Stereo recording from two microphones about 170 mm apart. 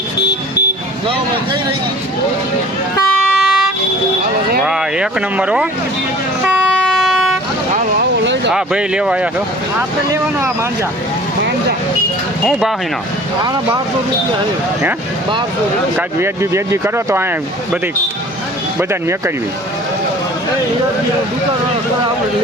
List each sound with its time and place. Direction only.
3.3 s music: centre (ahead or behind)
4.6 s speech: 5° right (ahead or behind)
6.4 s vehicle: centre (ahead or behind)
7.7 s vehicle: 45° right (ahead or behind)
8.2 s a sound: 90° right
8.5 s speech: 5° right (ahead or behind)
12.5 s speech: 5° right (ahead or behind)
16.0 s speech: 15° right (ahead or behind)
18.8 s speech: 15° right (ahead or behind)